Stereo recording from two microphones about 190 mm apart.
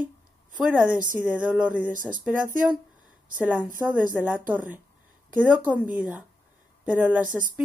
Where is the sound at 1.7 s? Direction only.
45° right (ahead or behind).